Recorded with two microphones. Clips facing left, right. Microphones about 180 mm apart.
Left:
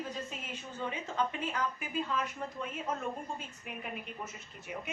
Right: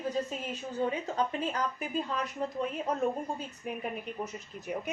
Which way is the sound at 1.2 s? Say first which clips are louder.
Even; 40° right (ahead or behind).